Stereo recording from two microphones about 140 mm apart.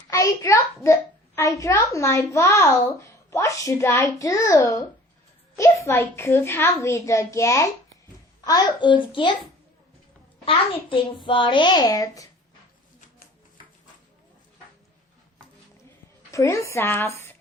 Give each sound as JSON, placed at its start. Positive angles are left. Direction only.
{"t": 0.1, "sound": "a child's voice", "side_deg": 20}
{"t": 10.4, "sound": "a child's voice", "side_deg": 40}
{"t": 16.3, "sound": "a child's voice", "side_deg": 20}